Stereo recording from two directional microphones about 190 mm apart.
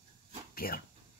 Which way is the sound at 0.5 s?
50° left (ahead or behind).